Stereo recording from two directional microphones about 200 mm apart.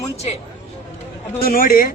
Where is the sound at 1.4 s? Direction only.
45° left (ahead or behind).